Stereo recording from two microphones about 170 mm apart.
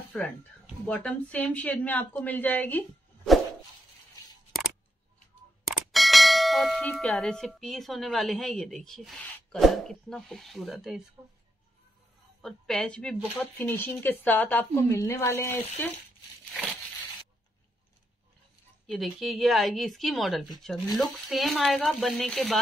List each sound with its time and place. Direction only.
0.1 s speech: 10° left (ahead or behind)
5.7 s bell: centre (ahead or behind)
11.2 s speech: 15° right (ahead or behind)
12.4 s speech: centre (ahead or behind)
18.9 s speech: centre (ahead or behind)